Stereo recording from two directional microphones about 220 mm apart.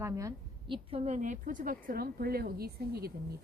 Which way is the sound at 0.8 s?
30° right (ahead or behind).